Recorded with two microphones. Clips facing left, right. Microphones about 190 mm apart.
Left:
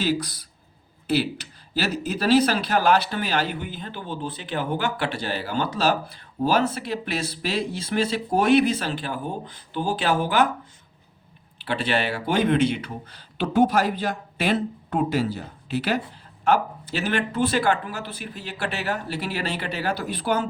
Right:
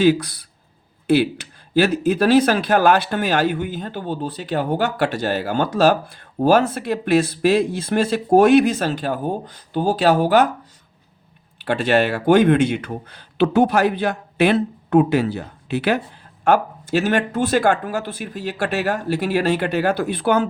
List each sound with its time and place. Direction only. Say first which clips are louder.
0.0 s speech: right 9 dB; 60° right (ahead or behind)
1.7 s speech: right 9 dB; 50° right (ahead or behind)
11.6 s speech: right 7 dB; 45° right (ahead or behind)
16.4 s speech: right 4 dB; 45° right (ahead or behind)